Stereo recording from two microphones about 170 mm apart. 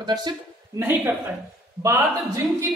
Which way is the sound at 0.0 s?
25° right (ahead or behind).